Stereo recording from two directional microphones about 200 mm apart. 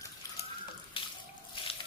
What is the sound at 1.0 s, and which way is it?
Water, 25° left (ahead or behind).